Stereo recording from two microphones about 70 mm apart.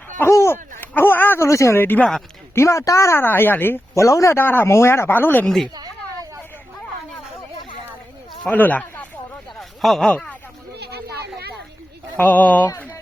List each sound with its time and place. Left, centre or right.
0.3 s speech: left
1.4 s speech: left
1.7 s speech: left
2.6 s speech: left
3.9 s speech: left
8.4 s speech: left
9.6 s a sound: centre
12.1 s speech: left